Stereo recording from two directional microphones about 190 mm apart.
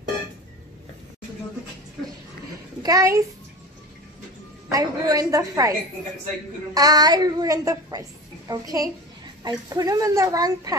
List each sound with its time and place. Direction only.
2.8 s a child's voice: 15° right (ahead or behind)
4.6 s a woman's voice: 20° right (ahead or behind)